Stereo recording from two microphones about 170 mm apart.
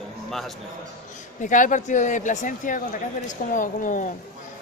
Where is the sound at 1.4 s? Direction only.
50° left (ahead or behind).